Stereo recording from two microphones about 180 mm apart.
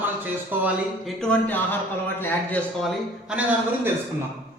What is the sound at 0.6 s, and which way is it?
Speech, centre (ahead or behind).